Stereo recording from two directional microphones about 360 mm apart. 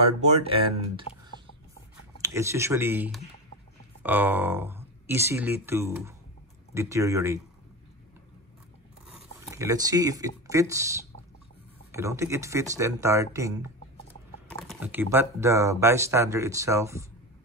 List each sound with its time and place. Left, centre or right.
0.0 s speech: centre
2.2 s speech: centre
9.1 s speech: centre
11.9 s speech: centre